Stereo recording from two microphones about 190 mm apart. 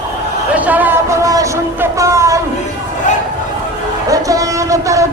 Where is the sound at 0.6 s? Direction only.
10° right (ahead or behind).